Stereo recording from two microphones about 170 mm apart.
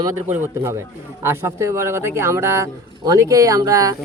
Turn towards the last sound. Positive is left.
turn(degrees=-20)  # may be behind; listen again after turning